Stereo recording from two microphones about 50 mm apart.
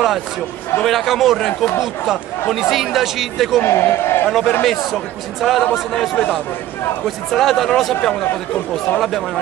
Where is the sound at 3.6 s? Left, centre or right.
Left.